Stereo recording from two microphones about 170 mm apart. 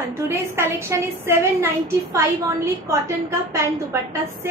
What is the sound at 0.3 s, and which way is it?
A woman's voice, 15° right (ahead or behind).